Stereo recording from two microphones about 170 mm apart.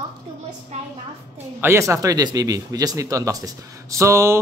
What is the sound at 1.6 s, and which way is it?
A man's voice, 15° right (ahead or behind).